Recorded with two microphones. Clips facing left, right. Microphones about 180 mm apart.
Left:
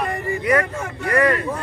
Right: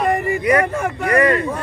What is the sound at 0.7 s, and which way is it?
Speech, 75° right (ahead or behind).